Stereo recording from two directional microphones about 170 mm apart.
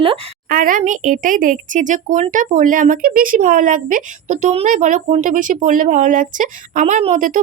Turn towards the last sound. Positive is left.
turn(degrees=-50)  # may be behind; listen again after turning